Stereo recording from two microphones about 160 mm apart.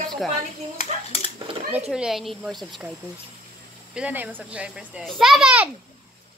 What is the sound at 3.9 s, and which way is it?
A child's voice, 10° right (ahead or behind).